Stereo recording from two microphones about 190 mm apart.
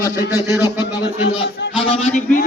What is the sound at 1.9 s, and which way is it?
Speech, 35° left (ahead or behind).